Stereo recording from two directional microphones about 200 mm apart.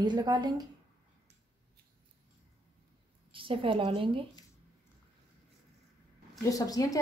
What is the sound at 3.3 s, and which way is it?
Speech, 25° right (ahead or behind).